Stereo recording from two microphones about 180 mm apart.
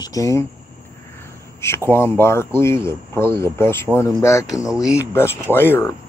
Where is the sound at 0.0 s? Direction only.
20° left (ahead or behind).